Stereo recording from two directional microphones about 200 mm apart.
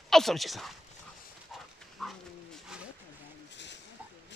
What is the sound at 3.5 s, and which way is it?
Snake, 60° left (ahead or behind).